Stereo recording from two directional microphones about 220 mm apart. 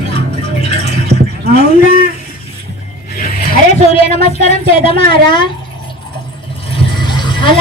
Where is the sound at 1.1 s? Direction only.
50° right (ahead or behind).